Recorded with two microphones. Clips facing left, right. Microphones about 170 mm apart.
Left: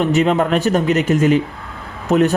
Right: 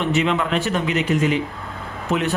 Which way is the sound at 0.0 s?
40° left (ahead or behind).